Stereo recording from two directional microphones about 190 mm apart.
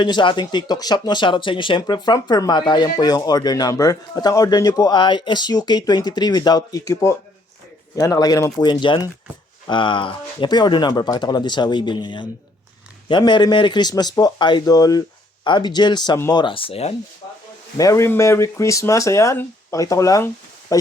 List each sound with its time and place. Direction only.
0.0 s speech: 25° left (ahead or behind)
17.7 s speech: 15° left (ahead or behind)